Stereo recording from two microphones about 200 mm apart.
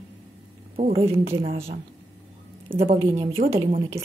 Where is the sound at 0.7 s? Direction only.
30° right (ahead or behind).